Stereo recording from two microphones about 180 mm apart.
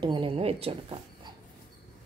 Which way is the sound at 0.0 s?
30° right (ahead or behind).